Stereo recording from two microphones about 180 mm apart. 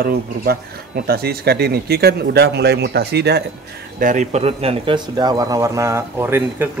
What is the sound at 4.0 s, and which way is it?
Speech, 45° right (ahead or behind).